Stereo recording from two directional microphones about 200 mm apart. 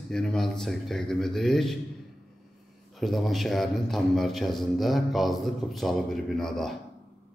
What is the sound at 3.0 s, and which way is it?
A man's voice, centre (ahead or behind).